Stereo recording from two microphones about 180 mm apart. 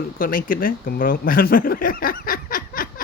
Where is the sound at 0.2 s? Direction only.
50° left (ahead or behind).